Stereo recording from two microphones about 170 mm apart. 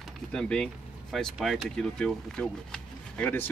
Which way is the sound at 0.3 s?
5° left (ahead or behind).